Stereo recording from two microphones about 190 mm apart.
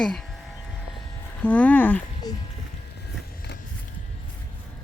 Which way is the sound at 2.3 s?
20° left (ahead or behind).